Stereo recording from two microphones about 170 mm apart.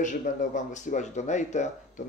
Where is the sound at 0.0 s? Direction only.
50° left (ahead or behind).